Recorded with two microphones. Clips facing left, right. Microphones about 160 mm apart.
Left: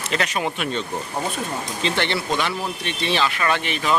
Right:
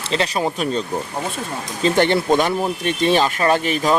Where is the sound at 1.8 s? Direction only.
45° right (ahead or behind).